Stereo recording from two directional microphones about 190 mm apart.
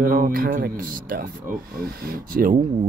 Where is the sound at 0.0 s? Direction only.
50° right (ahead or behind).